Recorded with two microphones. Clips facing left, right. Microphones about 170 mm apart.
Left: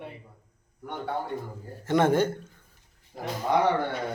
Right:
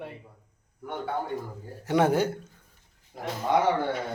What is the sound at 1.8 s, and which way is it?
Speech, 10° right (ahead or behind).